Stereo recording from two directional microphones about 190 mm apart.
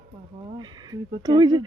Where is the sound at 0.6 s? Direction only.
20° right (ahead or behind).